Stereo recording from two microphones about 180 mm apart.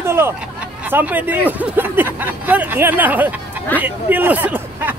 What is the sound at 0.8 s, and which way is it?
Speech, 10° right (ahead or behind).